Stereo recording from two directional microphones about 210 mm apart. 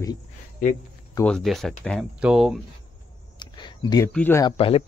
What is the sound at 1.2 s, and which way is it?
Speech, centre (ahead or behind).